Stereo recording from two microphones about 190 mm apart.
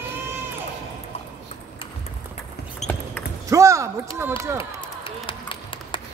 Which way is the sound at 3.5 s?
15° right (ahead or behind).